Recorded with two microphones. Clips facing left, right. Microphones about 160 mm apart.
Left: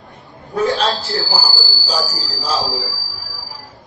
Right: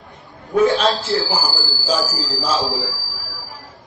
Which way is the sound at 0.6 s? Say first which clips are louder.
Right 2 dB; 35° left (ahead or behind).